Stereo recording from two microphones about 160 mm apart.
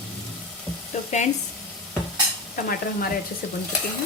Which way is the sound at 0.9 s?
45° left (ahead or behind).